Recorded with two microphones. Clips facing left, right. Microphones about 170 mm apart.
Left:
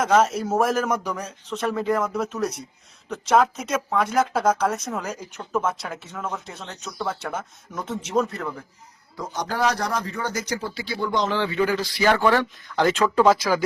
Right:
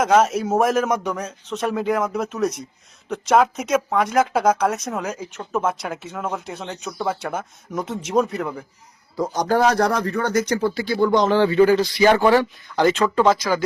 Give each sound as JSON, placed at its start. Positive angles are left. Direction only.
{"t": 0.1, "sound": "speech", "side_deg": 0}
{"t": 9.1, "sound": "speech", "side_deg": -40}
{"t": 11.8, "sound": "speech", "side_deg": -20}
{"t": 12.7, "sound": "speech", "side_deg": 0}